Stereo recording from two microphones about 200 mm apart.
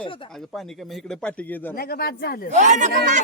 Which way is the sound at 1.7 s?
50° left (ahead or behind).